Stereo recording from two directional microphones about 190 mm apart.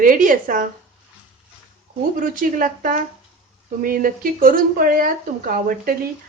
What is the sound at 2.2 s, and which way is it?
Speech, 45° right (ahead or behind).